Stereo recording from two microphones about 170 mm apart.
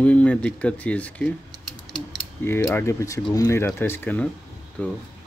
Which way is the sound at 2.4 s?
15° left (ahead or behind).